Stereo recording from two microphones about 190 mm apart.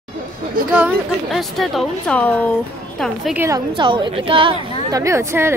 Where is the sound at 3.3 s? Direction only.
15° right (ahead or behind).